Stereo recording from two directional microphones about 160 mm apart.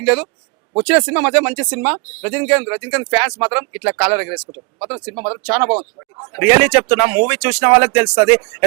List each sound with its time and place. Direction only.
0.0 s speech: 5° right (ahead or behind)